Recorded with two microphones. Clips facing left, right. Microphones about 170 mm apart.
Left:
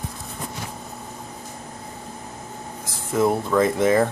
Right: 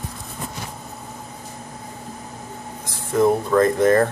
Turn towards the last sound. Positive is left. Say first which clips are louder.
# right 2 dB
turn(degrees=5)  # may be behind; listen again after turning